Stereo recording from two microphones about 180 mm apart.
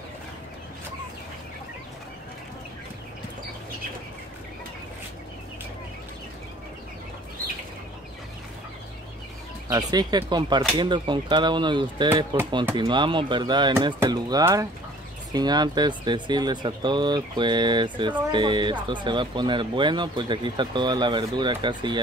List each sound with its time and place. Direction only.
9.7 s speech: 20° right (ahead or behind)